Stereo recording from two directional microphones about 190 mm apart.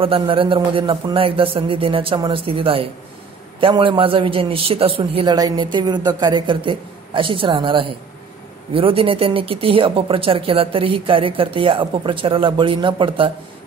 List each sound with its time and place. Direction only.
0.0 s speech: 30° right (ahead or behind)